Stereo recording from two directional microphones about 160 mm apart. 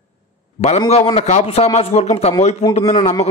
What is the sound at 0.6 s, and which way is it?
A man's voice, 40° left (ahead or behind).